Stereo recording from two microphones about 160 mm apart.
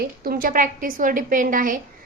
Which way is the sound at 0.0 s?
65° right (ahead or behind).